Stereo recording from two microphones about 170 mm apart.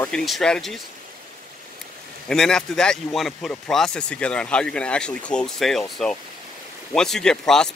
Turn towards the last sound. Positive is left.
turn(degrees=5)  # may be behind; listen again after turning